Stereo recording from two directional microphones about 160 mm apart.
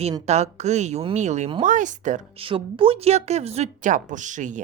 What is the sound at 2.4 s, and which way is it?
A woman's voice, 35° right (ahead or behind).